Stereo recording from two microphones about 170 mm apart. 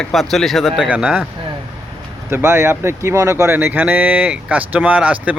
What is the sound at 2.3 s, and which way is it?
Speech, 15° right (ahead or behind).